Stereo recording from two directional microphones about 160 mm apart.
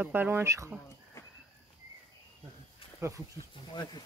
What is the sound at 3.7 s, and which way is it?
Speech, 25° left (ahead or behind).